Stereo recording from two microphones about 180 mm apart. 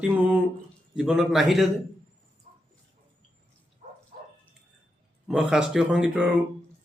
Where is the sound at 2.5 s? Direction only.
40° right (ahead or behind).